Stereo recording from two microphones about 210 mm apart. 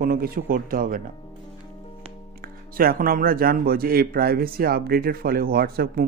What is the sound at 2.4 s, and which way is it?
Speech, 45° right (ahead or behind).